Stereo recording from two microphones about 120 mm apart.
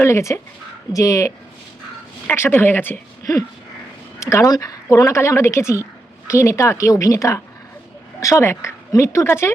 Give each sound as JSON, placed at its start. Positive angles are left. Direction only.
{"t": 0.0, "sound": "speech", "side_deg": 25}
{"t": 2.3, "sound": "speech", "side_deg": 15}
{"t": 4.2, "sound": "speech", "side_deg": 25}